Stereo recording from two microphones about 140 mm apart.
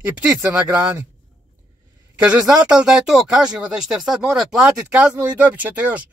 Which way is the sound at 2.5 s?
5° right (ahead or behind).